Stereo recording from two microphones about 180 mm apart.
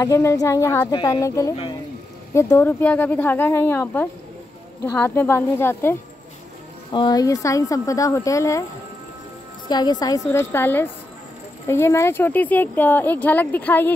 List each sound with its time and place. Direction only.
0.0 s speech: 15° left (ahead or behind)
6.9 s speech: 25° left (ahead or behind)
9.7 s speech: 20° left (ahead or behind)